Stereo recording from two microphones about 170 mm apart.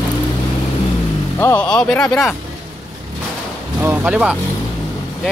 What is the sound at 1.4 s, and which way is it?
Speech, 10° left (ahead or behind).